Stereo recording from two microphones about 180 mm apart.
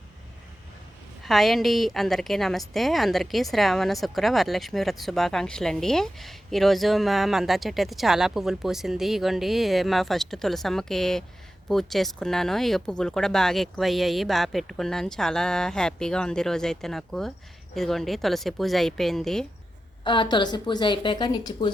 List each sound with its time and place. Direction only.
1.2 s a woman's voice: centre (ahead or behind)
20.1 s a woman's voice: 25° left (ahead or behind)